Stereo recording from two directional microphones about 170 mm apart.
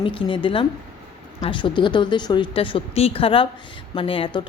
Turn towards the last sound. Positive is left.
turn(degrees=30)  # may be behind; listen again after turning